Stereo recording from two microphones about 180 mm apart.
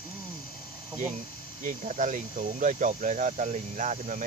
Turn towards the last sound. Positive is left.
turn(degrees=-45)  # may be behind; listen again after turning